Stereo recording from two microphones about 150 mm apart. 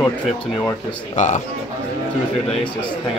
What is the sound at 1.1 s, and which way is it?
Speech, 55° left (ahead or behind).